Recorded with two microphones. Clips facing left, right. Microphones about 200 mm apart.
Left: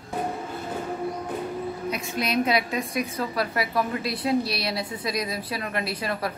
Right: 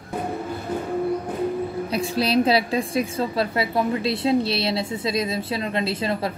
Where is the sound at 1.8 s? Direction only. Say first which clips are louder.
Right 5 dB; 30° right (ahead or behind).